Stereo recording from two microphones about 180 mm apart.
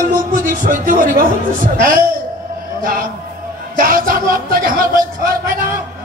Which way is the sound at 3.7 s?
50° right (ahead or behind).